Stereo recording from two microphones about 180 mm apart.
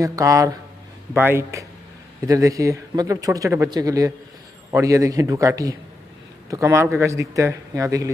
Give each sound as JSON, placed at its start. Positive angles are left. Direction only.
{"t": 0.0, "sound": "speech", "side_deg": -20}